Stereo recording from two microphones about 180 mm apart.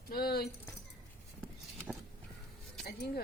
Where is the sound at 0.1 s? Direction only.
60° left (ahead or behind).